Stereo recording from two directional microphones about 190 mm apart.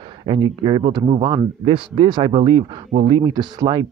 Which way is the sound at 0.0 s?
25° right (ahead or behind).